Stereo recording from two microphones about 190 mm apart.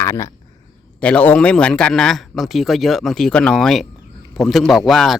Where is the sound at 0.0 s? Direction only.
15° left (ahead or behind).